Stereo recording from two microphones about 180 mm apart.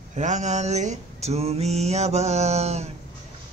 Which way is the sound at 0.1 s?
40° right (ahead or behind).